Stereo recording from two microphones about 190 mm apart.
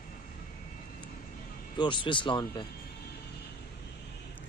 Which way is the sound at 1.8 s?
25° left (ahead or behind).